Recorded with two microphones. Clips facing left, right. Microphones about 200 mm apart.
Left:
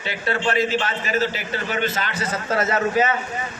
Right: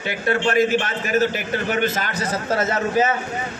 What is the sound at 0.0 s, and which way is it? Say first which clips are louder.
A man's voice: right 3 dB; 50° right (ahead or behind).